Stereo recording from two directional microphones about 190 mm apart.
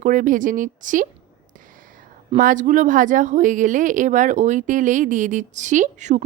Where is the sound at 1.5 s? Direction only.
45° right (ahead or behind).